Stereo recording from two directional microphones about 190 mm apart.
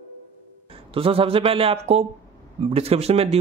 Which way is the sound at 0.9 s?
30° right (ahead or behind).